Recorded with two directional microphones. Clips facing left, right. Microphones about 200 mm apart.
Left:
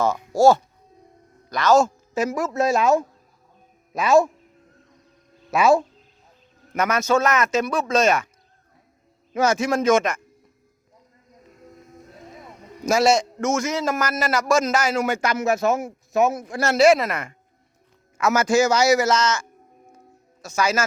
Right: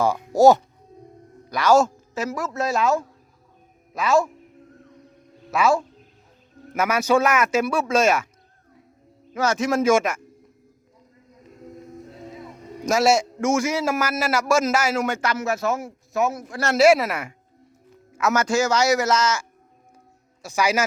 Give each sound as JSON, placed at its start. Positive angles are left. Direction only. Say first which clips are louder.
{"t": 0.0, "sound": "a man's voice", "louder": "right 1 dB", "side_deg": -15}
{"t": 2.1, "sound": "speech", "louder": "left 4 dB", "side_deg": 15}
{"t": 5.5, "sound": "speech", "louder": "left 3 dB", "side_deg": 20}
{"t": 6.7, "sound": "a man's voice", "louder": "right 1 dB", "side_deg": -10}
{"t": 9.3, "sound": "a man's voice", "louder": "left 3 dB", "side_deg": 15}
{"t": 9.6, "sound": "a man's voice", "louder": "right 3 dB", "side_deg": -5}
{"t": 12.9, "sound": "a man's voice", "louder": "left 1 dB", "side_deg": -5}
{"t": 15.0, "sound": "speech", "louder": "left 2 dB", "side_deg": 10}
{"t": 16.6, "sound": "a man's voice", "louder": "even", "side_deg": -5}
{"t": 18.2, "sound": "a man's voice", "louder": "left 2 dB", "side_deg": 5}